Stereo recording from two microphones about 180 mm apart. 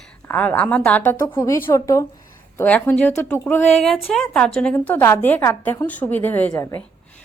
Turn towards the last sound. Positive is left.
turn(degrees=10)  # may be behind; listen again after turning